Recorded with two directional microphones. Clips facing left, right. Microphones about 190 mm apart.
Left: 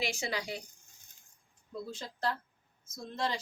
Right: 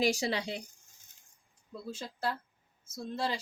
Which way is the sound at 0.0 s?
40° right (ahead or behind).